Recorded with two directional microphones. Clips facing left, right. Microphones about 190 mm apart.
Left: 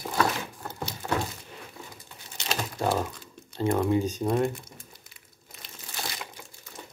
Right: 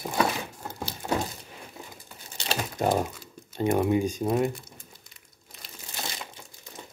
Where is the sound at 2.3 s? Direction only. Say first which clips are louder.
Right 1 dB; 30° right (ahead or behind).